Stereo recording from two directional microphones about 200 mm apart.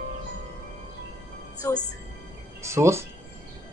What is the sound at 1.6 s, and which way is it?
Music, 15° left (ahead or behind).